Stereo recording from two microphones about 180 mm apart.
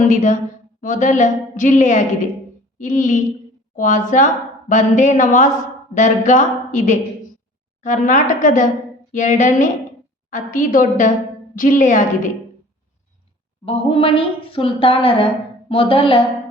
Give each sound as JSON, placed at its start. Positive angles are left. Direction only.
{"t": 0.0, "sound": "a woman's voice", "side_deg": 45}
{"t": 13.7, "sound": "a woman's voice", "side_deg": 30}